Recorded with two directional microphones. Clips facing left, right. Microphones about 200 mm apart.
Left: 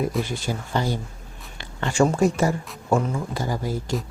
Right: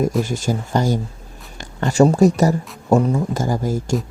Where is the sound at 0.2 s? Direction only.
45° right (ahead or behind).